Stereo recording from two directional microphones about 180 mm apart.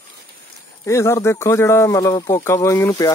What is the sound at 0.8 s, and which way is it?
Speech, 15° left (ahead or behind).